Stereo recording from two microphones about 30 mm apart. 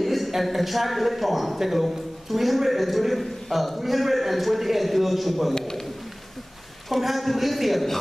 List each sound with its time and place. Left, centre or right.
0.0 s a man's voice: centre
5.5 s a man's voice: centre
6.9 s a man's voice: centre